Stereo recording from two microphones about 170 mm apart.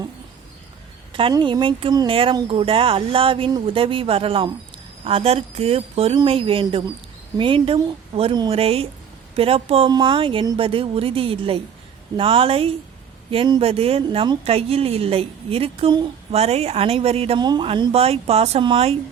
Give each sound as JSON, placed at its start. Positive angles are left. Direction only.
{"t": 1.1, "sound": "speech", "side_deg": -30}